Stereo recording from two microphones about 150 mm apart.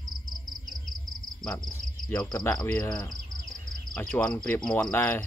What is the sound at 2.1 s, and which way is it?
Cricket, 25° left (ahead or behind).